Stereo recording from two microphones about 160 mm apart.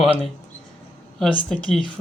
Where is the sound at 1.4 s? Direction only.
5° left (ahead or behind).